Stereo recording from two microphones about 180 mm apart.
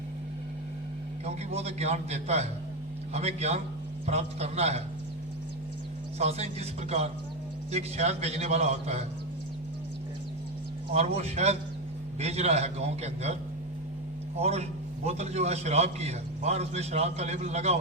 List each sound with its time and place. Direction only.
1.2 s a man's voice: 35° right (ahead or behind)
6.1 s a man's voice: 35° right (ahead or behind)
10.9 s a man's voice: 40° right (ahead or behind)
14.3 s a man's voice: 35° right (ahead or behind)